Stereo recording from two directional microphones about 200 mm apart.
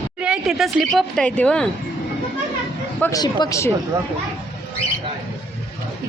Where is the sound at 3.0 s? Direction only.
20° left (ahead or behind).